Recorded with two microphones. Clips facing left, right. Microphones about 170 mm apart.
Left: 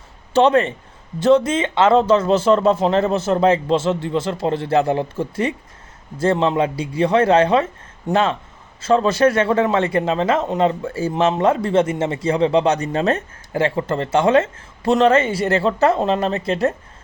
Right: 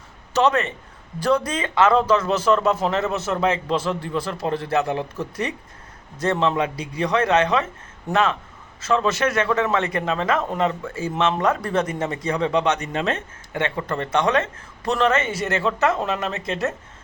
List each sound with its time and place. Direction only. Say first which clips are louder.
0.3 s a man's voice: left 5 dB; 30° left (ahead or behind)